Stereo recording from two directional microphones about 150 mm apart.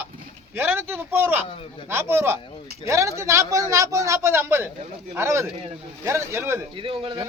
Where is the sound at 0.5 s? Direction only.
15° right (ahead or behind).